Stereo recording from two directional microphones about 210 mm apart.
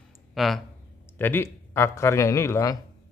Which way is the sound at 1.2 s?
10° left (ahead or behind).